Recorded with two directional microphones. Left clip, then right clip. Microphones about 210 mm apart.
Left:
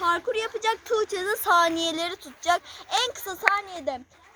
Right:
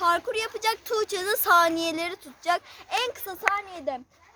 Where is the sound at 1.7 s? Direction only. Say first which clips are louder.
Left 1 dB; 5° right (ahead or behind).